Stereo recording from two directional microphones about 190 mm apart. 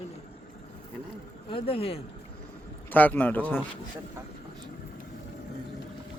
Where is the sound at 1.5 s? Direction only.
30° left (ahead or behind).